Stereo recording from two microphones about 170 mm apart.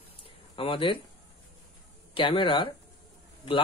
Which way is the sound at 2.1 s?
30° left (ahead or behind).